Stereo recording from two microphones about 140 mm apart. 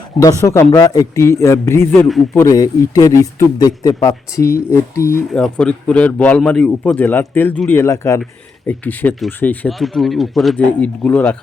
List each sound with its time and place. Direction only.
0.2 s speech: 25° left (ahead or behind)
5.3 s a man's voice: 5° left (ahead or behind)
9.6 s speech: centre (ahead or behind)